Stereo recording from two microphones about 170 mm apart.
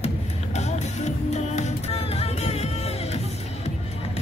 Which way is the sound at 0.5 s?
40° left (ahead or behind).